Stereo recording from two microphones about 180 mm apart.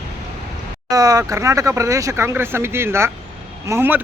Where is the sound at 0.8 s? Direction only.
20° right (ahead or behind).